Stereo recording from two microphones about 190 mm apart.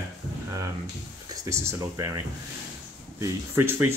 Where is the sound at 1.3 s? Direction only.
15° right (ahead or behind).